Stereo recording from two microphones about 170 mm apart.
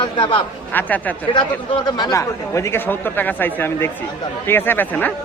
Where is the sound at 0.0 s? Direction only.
30° left (ahead or behind).